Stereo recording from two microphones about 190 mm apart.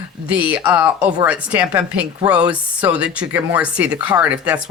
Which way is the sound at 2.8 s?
5° right (ahead or behind).